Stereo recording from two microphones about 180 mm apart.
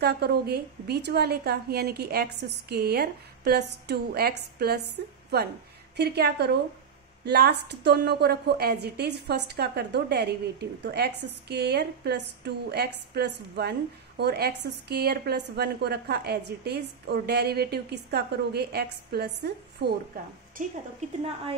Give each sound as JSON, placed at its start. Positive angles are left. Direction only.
{"t": 0.0, "sound": "a woman's voice", "side_deg": -60}